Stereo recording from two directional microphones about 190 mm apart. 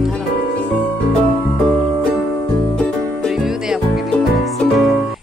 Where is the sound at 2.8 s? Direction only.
Centre (ahead or behind).